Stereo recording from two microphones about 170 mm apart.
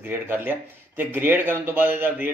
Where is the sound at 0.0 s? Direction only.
10° right (ahead or behind).